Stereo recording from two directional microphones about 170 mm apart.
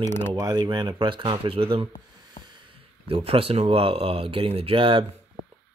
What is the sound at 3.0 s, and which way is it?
Speech, 35° right (ahead or behind).